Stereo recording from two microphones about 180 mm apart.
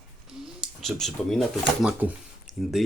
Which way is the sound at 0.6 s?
Centre (ahead or behind).